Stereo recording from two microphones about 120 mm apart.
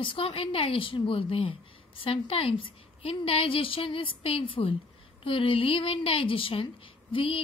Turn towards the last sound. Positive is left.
turn(degrees=50)  # may be behind; listen again after turning